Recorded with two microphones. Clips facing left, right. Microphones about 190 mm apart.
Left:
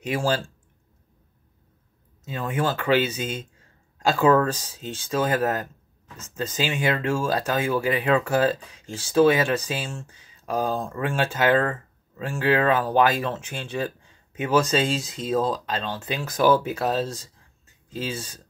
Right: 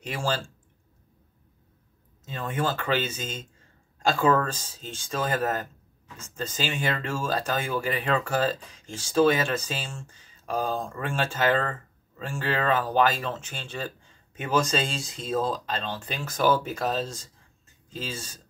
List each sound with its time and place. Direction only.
2.2 s speech: 10° left (ahead or behind)